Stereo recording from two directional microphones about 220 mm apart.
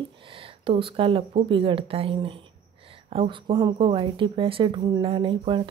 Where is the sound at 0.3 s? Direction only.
25° right (ahead or behind).